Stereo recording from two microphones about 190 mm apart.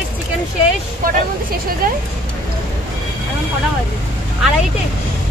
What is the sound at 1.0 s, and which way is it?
Speech, 50° right (ahead or behind).